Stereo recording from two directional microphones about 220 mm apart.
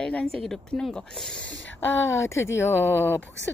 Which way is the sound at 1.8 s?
10° left (ahead or behind).